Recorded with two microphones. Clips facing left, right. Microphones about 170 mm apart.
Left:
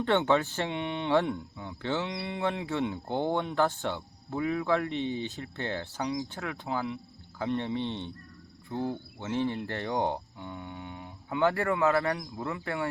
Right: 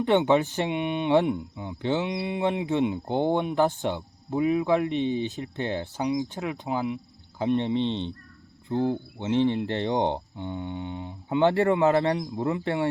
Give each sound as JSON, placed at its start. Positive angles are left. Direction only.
{"t": 0.0, "sound": "speech", "side_deg": -15}